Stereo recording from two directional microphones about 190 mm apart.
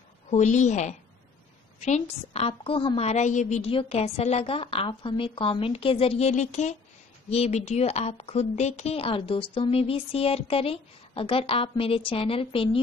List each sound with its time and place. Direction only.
0.3 s a woman's voice: 40° left (ahead or behind)